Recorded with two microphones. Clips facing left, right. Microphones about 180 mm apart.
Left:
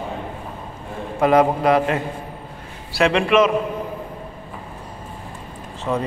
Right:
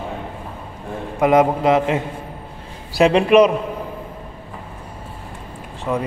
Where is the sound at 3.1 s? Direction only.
40° right (ahead or behind).